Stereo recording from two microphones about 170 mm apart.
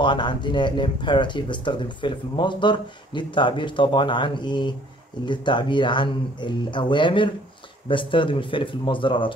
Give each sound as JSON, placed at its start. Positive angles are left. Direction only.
{"t": 0.0, "sound": "speech", "side_deg": 25}